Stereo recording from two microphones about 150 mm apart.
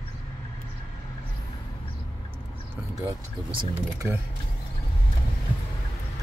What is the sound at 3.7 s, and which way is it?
Speech, 15° right (ahead or behind).